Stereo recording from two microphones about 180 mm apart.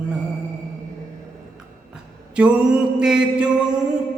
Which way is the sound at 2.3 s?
5° right (ahead or behind).